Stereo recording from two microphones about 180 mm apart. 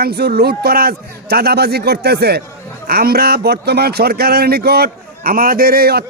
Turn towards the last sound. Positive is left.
turn(degrees=-60)  # may be behind; listen again after turning